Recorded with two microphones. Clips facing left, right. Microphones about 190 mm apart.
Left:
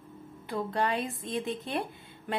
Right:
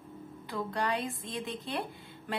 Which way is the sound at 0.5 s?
25° left (ahead or behind).